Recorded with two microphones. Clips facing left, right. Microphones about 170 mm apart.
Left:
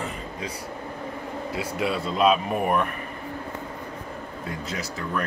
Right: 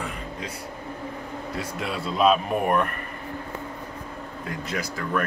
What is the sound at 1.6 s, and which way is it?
Speech, centre (ahead or behind).